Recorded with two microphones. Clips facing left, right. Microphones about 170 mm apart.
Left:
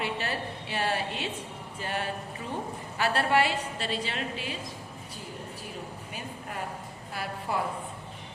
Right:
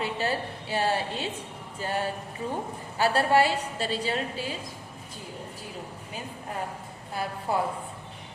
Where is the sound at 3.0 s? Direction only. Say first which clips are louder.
Right 3 dB; 35° right (ahead or behind).